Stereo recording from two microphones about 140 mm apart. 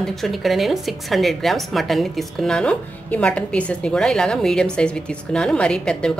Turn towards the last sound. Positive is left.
turn(degrees=5)  # may be behind; listen again after turning